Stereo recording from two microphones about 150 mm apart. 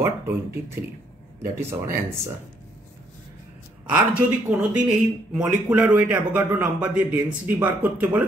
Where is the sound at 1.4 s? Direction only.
20° right (ahead or behind).